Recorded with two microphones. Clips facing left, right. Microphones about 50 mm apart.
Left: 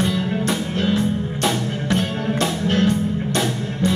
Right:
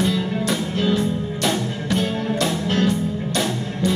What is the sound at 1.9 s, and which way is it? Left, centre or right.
Music, left.